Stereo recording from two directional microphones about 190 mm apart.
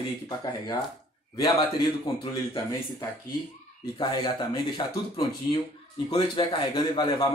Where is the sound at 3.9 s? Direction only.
25° left (ahead or behind).